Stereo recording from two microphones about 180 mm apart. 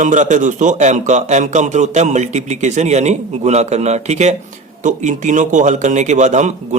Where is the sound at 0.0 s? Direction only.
45° right (ahead or behind).